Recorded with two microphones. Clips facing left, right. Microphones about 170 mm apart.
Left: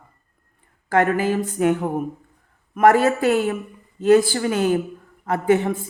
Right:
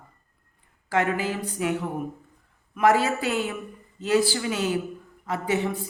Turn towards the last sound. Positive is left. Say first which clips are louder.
# left 7 dB
turn(degrees=50)  # may be behind; listen again after turning